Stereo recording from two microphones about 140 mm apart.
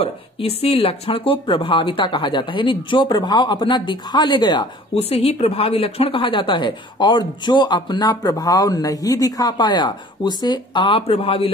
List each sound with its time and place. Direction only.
0.0 s speech: 45° left (ahead or behind)
4.9 s speech: 45° left (ahead or behind)